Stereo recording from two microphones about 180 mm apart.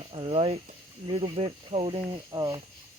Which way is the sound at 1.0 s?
30° right (ahead or behind).